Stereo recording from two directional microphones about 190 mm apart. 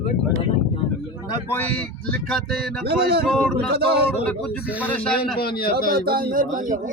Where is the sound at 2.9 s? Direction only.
55° right (ahead or behind).